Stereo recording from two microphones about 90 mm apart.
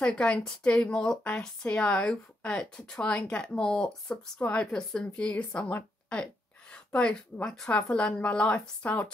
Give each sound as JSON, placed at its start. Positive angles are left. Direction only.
{"t": 0.0, "sound": "a woman's voice", "side_deg": 10}